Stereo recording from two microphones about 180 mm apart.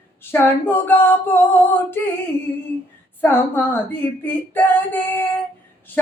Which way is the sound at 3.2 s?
10° left (ahead or behind).